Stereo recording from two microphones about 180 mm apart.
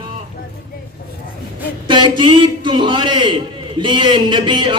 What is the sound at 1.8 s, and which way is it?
A man's voice, 25° right (ahead or behind).